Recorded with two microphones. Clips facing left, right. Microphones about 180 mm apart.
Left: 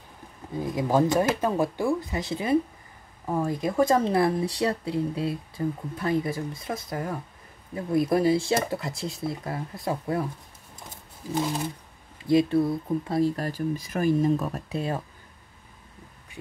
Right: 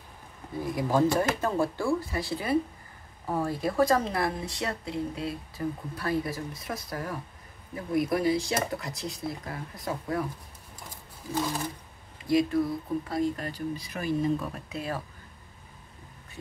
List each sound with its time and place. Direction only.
0.6 s speech: 20° left (ahead or behind)
11.3 s speech: 20° left (ahead or behind)
13.4 s speech: 45° left (ahead or behind)
14.8 s speech: 25° left (ahead or behind)